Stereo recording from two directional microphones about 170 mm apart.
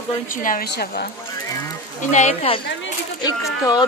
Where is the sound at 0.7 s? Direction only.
65° left (ahead or behind).